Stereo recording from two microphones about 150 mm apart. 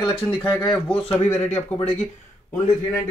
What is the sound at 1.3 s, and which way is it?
Speech, 50° left (ahead or behind).